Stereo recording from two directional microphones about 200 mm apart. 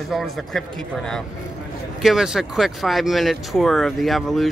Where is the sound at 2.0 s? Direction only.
Centre (ahead or behind).